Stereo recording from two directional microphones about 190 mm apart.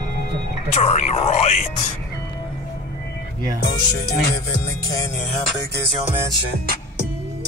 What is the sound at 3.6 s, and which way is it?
Music, 55° left (ahead or behind).